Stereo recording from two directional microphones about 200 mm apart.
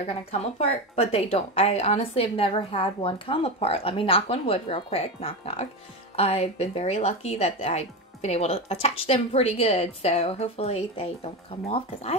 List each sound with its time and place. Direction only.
0.0 s a woman's voice: 30° left (ahead or behind)